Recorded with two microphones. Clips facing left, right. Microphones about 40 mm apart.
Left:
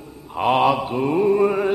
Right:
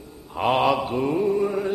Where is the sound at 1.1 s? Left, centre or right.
Left.